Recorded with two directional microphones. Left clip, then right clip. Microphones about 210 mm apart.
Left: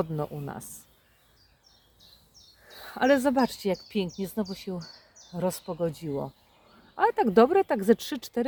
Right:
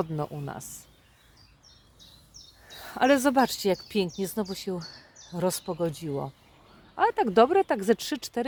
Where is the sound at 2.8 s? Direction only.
25° right (ahead or behind).